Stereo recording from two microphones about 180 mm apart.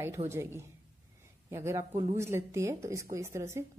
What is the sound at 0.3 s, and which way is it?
Speech, 15° right (ahead or behind).